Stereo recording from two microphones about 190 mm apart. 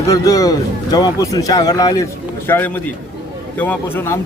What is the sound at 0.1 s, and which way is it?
A man's voice, 15° left (ahead or behind).